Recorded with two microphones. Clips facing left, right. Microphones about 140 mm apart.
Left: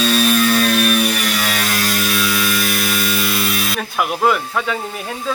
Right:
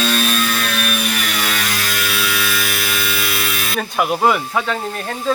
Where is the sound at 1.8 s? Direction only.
40° left (ahead or behind).